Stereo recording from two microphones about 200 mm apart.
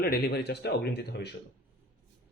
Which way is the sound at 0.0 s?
55° left (ahead or behind).